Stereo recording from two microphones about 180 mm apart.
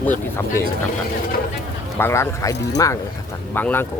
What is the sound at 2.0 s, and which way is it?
Speech, 15° left (ahead or behind).